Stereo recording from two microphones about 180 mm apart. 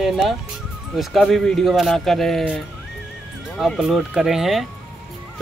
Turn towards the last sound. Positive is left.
turn(degrees=0)  # may be behind; listen again after turning